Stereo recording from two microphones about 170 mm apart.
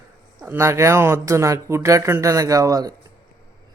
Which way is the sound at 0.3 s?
15° right (ahead or behind).